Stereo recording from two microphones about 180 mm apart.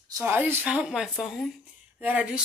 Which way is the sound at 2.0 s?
5° right (ahead or behind).